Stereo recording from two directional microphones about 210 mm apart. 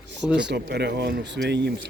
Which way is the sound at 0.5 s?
50° right (ahead or behind).